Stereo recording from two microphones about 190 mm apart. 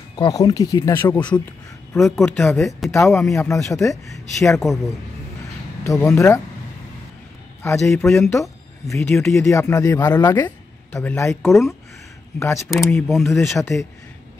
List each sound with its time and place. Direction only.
0.1 s speech: 20° left (ahead or behind)
2.1 s speech: 5° left (ahead or behind)
4.6 s speech: centre (ahead or behind)
5.9 s speech: 15° left (ahead or behind)
7.6 s speech: 15° left (ahead or behind)
12.8 s speech: 5° left (ahead or behind)
13.3 s speech: 15° left (ahead or behind)